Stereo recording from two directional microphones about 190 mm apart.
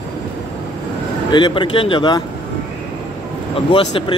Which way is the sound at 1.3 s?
25° left (ahead or behind).